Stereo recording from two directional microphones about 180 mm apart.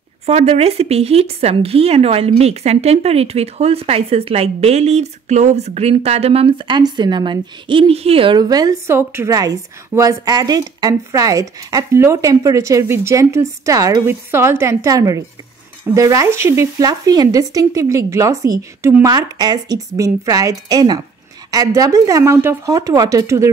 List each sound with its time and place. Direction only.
0.3 s speech: 35° right (ahead or behind); by 23.5 s 15° right (ahead or behind)